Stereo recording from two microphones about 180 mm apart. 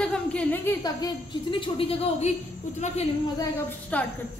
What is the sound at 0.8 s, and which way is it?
A woman's voice, 25° left (ahead or behind).